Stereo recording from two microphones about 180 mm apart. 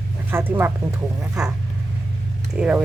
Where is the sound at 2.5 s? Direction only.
5° right (ahead or behind).